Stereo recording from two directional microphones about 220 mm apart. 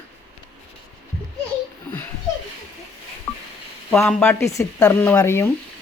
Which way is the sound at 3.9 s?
5° left (ahead or behind).